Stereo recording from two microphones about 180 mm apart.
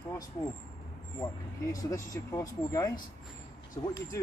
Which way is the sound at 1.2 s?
20° left (ahead or behind).